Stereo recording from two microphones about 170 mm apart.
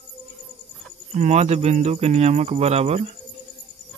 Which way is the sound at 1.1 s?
40° right (ahead or behind).